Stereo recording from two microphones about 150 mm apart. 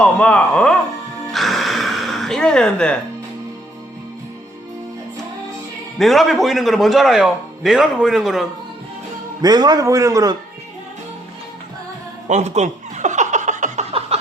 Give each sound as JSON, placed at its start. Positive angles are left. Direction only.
{"t": 0.0, "sound": "speech", "side_deg": 10}
{"t": 1.3, "sound": "gasp", "side_deg": 0}
{"t": 6.0, "sound": "speech", "side_deg": 0}
{"t": 9.4, "sound": "a man's voice", "side_deg": -25}
{"t": 12.3, "sound": "chuckle", "side_deg": -50}